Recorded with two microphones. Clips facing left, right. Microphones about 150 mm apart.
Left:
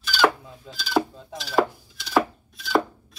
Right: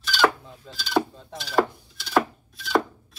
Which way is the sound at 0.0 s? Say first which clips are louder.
Left 1 dB; centre (ahead or behind).